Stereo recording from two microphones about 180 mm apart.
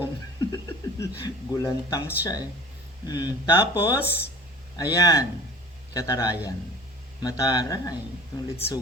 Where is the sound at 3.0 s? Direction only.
20° left (ahead or behind).